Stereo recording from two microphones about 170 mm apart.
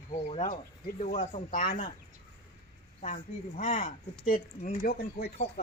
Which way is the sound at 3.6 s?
50° left (ahead or behind).